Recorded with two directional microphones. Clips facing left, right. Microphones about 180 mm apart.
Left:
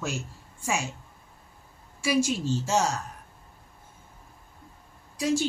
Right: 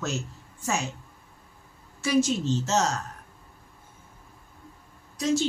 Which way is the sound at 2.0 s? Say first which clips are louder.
Right 2 dB; 10° left (ahead or behind).